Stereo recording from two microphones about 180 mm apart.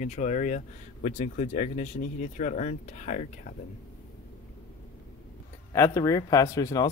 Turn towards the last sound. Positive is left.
turn(degrees=15)  # may be behind; listen again after turning